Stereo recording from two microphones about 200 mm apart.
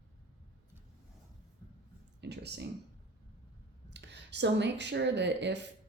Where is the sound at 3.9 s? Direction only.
60° right (ahead or behind).